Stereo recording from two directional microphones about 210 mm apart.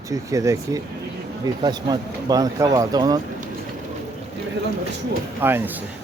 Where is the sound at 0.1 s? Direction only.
15° right (ahead or behind).